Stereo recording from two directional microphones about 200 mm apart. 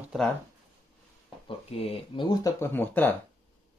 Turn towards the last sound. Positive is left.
turn(degrees=10)  # may be behind; listen again after turning